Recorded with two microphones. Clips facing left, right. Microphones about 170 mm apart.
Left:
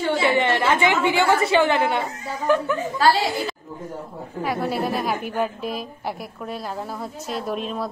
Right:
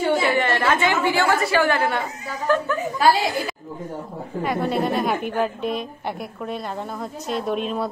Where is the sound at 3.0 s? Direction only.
15° right (ahead or behind).